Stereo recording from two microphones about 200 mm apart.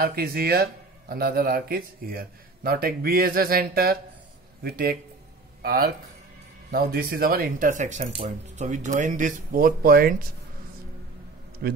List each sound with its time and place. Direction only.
0.0 s speech: 50° right (ahead or behind)
11.6 s speech: 50° right (ahead or behind)